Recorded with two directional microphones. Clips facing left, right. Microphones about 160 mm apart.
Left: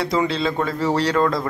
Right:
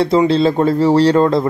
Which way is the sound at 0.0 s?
30° right (ahead or behind).